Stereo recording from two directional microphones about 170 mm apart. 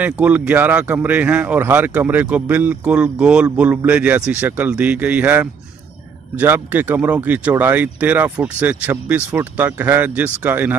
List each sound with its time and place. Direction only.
0.0 s speech: 10° right (ahead or behind)